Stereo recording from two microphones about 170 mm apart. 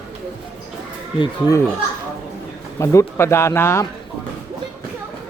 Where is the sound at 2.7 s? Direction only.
15° left (ahead or behind).